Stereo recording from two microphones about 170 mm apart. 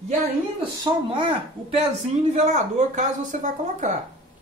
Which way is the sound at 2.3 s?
45° right (ahead or behind).